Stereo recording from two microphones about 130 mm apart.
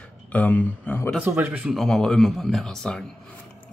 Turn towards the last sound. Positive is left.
turn(degrees=5)  # may be behind; listen again after turning